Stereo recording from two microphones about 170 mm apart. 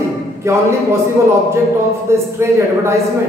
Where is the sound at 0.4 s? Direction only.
15° right (ahead or behind).